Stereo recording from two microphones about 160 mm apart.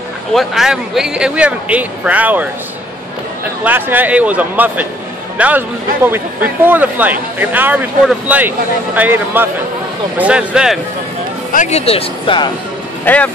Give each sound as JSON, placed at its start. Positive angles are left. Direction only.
{"t": 0.3, "sound": "speech", "side_deg": 0}
{"t": 3.6, "sound": "speech", "side_deg": -10}
{"t": 11.5, "sound": "speech", "side_deg": 45}
{"t": 13.0, "sound": "speech", "side_deg": 10}